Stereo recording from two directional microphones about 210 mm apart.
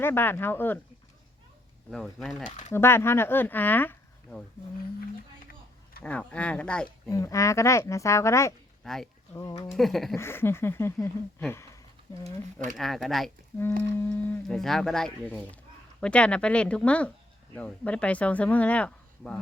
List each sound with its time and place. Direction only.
0.0 s speech: 10° left (ahead or behind)
1.9 s speech: centre (ahead or behind)
6.0 s speech: 5° left (ahead or behind)
8.8 s speech: centre (ahead or behind)
9.3 s speech: 15° left (ahead or behind)
9.7 s speech: centre (ahead or behind)
10.2 s speech: 10° left (ahead or behind)